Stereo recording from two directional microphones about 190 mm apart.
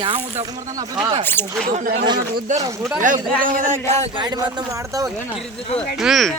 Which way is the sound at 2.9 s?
45° right (ahead or behind).